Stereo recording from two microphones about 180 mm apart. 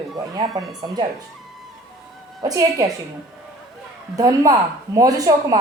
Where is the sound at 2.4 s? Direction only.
20° right (ahead or behind).